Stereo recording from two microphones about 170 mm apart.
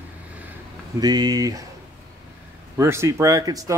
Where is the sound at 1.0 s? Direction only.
25° right (ahead or behind).